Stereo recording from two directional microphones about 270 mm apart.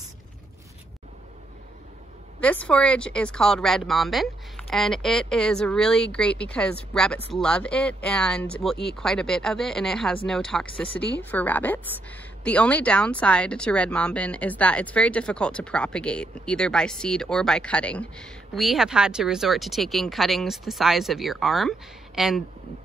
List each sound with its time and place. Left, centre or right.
2.4 s a woman's voice: centre